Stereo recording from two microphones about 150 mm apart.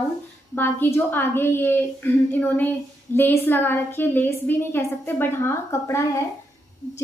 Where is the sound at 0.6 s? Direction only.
15° left (ahead or behind).